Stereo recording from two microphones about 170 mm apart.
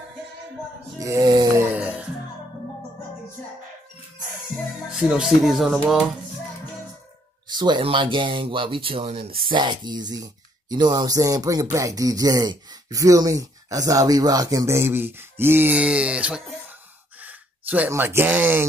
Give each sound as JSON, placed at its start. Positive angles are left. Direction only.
{"t": 0.9, "sound": "a sound", "side_deg": -20}
{"t": 4.8, "sound": "speech", "side_deg": -5}
{"t": 7.4, "sound": "speech", "side_deg": -25}